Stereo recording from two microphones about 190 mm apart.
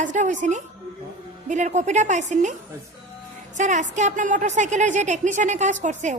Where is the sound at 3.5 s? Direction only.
40° right (ahead or behind).